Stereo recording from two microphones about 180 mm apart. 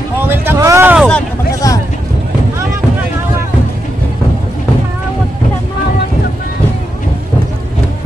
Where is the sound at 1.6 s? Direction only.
20° left (ahead or behind).